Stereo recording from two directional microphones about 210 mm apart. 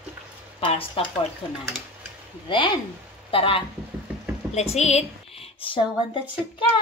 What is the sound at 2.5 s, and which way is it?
A woman's voice, 20° left (ahead or behind).